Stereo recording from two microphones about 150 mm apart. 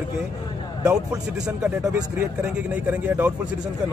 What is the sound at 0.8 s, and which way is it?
Speech, 25° right (ahead or behind).